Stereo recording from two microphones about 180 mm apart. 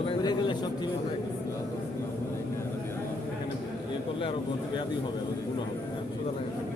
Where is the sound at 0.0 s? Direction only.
25° left (ahead or behind).